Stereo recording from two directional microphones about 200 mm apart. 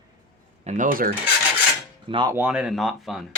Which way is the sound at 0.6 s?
40° right (ahead or behind).